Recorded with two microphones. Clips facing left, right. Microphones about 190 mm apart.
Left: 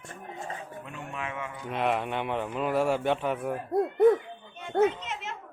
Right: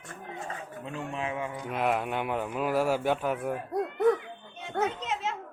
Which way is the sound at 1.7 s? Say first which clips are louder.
Left 1 dB; 5° right (ahead or behind).